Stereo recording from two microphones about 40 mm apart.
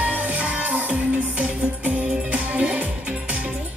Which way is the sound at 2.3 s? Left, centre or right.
Right.